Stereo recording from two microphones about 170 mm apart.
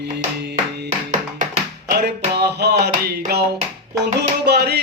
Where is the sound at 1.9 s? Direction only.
70° right (ahead or behind).